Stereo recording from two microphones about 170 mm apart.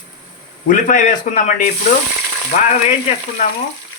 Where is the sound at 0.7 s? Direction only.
50° left (ahead or behind).